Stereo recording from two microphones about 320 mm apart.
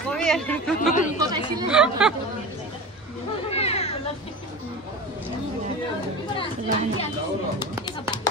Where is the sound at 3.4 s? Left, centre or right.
Centre.